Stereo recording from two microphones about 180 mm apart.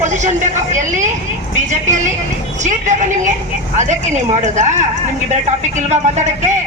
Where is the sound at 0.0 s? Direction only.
45° right (ahead or behind).